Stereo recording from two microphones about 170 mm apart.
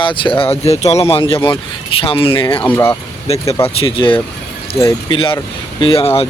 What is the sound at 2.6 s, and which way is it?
Speech, 15° left (ahead or behind).